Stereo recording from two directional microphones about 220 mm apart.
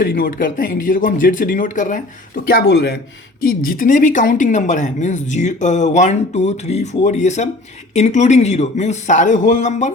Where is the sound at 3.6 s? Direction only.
40° left (ahead or behind).